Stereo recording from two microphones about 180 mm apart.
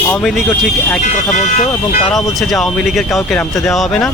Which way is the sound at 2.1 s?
Centre (ahead or behind).